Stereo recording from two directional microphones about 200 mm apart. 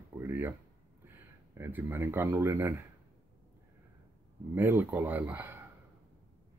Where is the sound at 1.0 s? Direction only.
10° right (ahead or behind).